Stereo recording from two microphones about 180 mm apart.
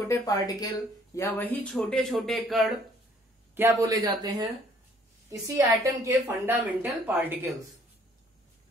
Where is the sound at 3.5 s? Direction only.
15° right (ahead or behind).